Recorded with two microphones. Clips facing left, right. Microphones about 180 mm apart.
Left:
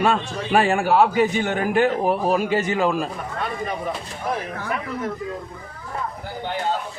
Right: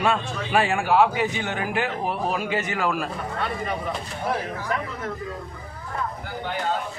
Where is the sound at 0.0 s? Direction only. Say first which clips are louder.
Left 3 dB; 40° left (ahead or behind).